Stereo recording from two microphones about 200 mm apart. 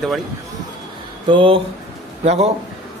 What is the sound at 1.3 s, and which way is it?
Speech, 25° right (ahead or behind).